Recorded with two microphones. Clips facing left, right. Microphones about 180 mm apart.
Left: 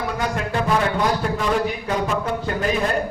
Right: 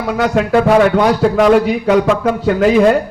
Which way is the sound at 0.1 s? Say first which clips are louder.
Right 11 dB; 85° right.